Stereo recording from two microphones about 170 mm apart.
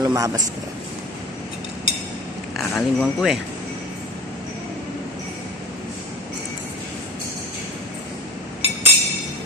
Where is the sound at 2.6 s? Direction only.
Centre (ahead or behind).